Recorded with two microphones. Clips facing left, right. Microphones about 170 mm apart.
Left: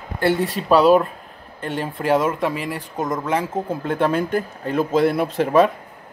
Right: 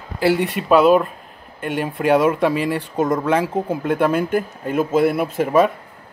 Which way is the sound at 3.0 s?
20° left (ahead or behind).